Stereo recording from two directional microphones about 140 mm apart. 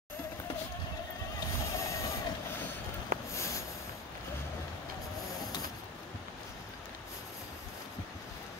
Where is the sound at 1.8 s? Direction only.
20° left (ahead or behind).